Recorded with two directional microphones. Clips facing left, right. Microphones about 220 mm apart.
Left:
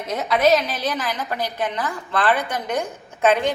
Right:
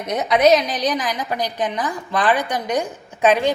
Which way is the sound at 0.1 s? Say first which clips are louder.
Right 3 dB; 20° right (ahead or behind).